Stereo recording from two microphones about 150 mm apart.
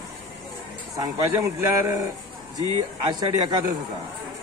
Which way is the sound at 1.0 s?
20° right (ahead or behind).